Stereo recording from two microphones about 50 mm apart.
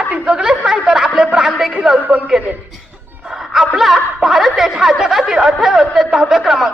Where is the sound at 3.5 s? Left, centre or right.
Centre.